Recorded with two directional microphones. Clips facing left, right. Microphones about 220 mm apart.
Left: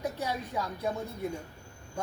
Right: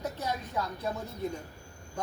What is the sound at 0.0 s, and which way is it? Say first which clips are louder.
Speech: left 1 dB; 10° left (ahead or behind).